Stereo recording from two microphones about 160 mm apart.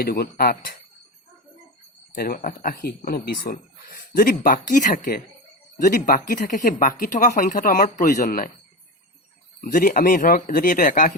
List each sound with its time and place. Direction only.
0.0 s speech: 70° left (ahead or behind)
2.1 s speech: 70° left (ahead or behind)
9.6 s speech: 60° left (ahead or behind)